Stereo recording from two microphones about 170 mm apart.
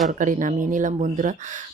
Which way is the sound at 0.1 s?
50° right (ahead or behind).